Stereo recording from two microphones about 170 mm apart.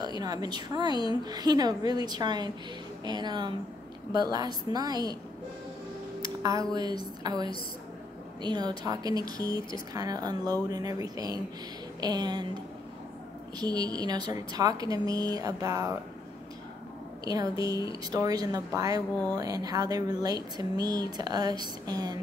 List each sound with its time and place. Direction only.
0.2 s speech: 25° right (ahead or behind)
6.2 s music: 20° right (ahead or behind)
6.7 s speech: 25° right (ahead or behind)
13.6 s speech: 25° right (ahead or behind)
17.2 s speech: 20° right (ahead or behind)